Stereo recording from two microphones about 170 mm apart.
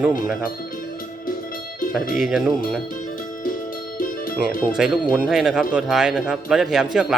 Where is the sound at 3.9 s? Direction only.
55° left (ahead or behind).